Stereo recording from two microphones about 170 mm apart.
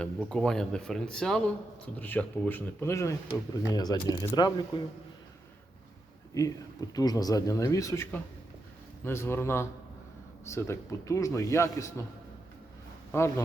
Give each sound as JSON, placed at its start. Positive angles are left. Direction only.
{"t": 0.0, "sound": "a man's voice", "side_deg": 5}
{"t": 6.3, "sound": "a man's voice", "side_deg": 20}
{"t": 13.1, "sound": "a man's voice", "side_deg": 15}